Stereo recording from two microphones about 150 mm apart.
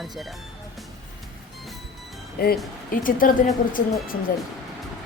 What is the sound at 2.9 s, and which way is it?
Speech, 70° left (ahead or behind).